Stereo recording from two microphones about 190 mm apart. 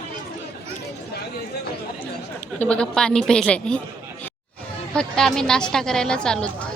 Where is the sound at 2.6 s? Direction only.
5° left (ahead or behind).